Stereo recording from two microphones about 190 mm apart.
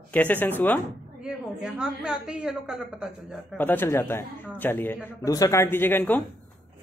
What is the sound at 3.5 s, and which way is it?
A man's voice, 10° left (ahead or behind).